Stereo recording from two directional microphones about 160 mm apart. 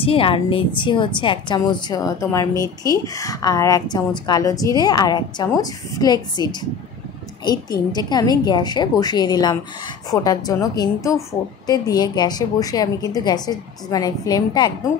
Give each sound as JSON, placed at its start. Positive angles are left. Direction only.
{"t": 0.0, "sound": "a woman's voice", "side_deg": 35}
{"t": 7.9, "sound": "a woman's voice", "side_deg": 25}